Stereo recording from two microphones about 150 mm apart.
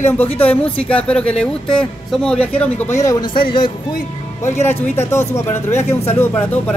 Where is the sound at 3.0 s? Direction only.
25° left (ahead or behind).